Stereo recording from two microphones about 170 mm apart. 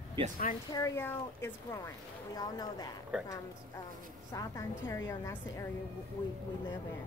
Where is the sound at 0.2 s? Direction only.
30° right (ahead or behind).